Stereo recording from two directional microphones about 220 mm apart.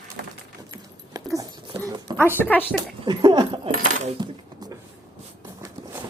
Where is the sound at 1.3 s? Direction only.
15° right (ahead or behind).